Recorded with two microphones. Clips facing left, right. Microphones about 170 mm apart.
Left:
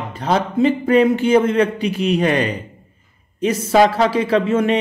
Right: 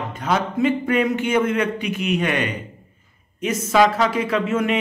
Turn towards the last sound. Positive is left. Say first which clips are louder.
# left 5 dB
turn(degrees=30)  # may be behind; listen again after turning